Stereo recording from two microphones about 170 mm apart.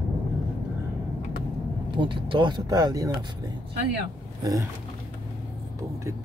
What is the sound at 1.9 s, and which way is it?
Speech, 30° right (ahead or behind).